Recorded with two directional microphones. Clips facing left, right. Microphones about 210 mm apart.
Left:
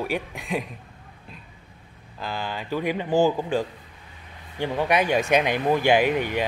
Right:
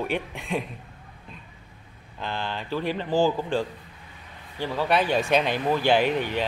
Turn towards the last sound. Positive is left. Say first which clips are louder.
# left 2 dB
turn(degrees=10)  # may be behind; listen again after turning